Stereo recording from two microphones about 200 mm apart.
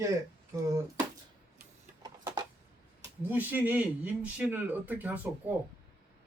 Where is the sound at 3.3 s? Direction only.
10° right (ahead or behind).